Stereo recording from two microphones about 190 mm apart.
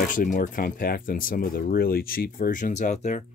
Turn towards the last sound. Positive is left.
turn(degrees=40)  # may be behind; listen again after turning